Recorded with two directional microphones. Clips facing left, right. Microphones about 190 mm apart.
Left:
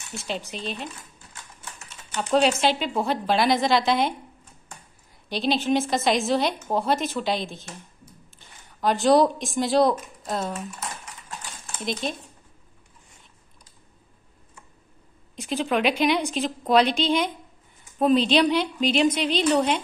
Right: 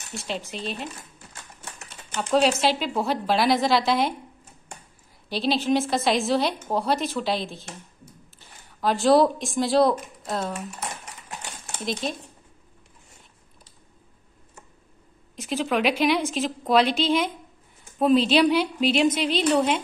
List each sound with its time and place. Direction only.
0.1 s a woman's voice: centre (ahead or behind)
2.3 s a woman's voice: centre (ahead or behind)
5.3 s a woman's voice: centre (ahead or behind)
8.8 s a woman's voice: centre (ahead or behind)
12.0 s a woman's voice: centre (ahead or behind)
15.3 s a woman's voice: centre (ahead or behind)